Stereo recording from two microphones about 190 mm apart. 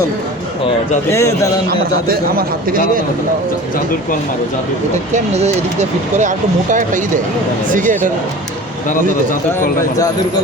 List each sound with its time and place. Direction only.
1.1 s speech: 15° left (ahead or behind)
2.6 s speech: 50° right (ahead or behind)
5.1 s speech: 35° right (ahead or behind)